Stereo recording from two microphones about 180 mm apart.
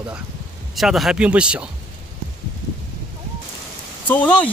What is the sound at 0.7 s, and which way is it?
Speech, centre (ahead or behind).